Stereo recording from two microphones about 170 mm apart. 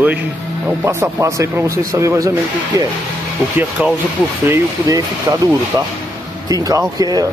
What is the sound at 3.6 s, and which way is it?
Speech, 10° right (ahead or behind).